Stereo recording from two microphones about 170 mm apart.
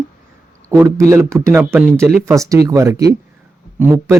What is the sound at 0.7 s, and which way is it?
A man's voice, 20° right (ahead or behind).